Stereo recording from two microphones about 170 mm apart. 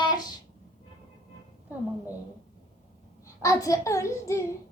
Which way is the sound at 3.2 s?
20° left (ahead or behind).